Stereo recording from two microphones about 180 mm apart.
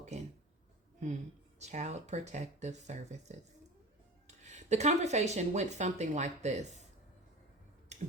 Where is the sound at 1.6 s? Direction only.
40° right (ahead or behind).